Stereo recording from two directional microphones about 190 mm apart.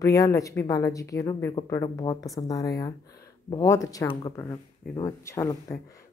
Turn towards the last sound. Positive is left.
turn(degrees=15)  # may be behind; listen again after turning